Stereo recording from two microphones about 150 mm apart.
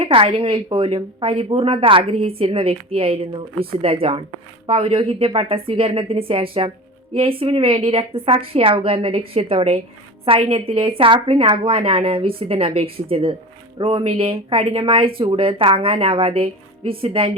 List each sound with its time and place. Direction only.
0.0 s a woman's voice: 40° right (ahead or behind)